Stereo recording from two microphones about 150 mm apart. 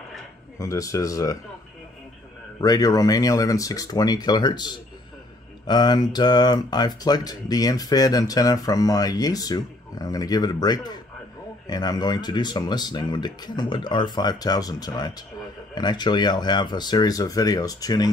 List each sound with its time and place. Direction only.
0.6 s speech: 20° left (ahead or behind)
2.6 s speech: 25° left (ahead or behind)